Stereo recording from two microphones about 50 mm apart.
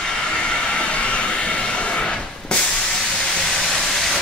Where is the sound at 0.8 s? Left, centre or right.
Left.